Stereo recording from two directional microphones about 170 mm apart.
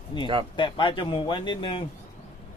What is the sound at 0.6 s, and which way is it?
Speech, 30° left (ahead or behind).